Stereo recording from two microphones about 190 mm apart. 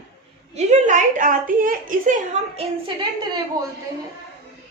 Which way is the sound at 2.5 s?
25° right (ahead or behind).